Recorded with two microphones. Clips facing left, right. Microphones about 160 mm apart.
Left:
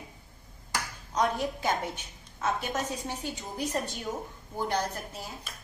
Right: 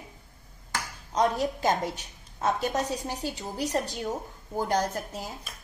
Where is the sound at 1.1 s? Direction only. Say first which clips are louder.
Right 3 dB; 40° right (ahead or behind).